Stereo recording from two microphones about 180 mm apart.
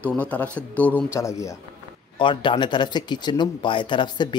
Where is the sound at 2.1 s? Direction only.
25° left (ahead or behind).